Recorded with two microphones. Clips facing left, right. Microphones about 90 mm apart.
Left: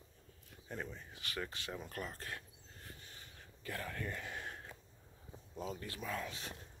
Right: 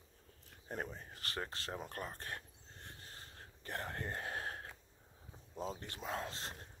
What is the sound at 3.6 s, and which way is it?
Speech, 30° right (ahead or behind).